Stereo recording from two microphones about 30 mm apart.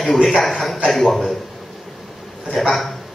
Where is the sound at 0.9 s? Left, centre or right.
Centre.